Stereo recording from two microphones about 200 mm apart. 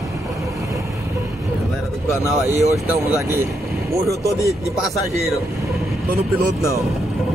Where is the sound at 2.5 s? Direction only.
35° right (ahead or behind).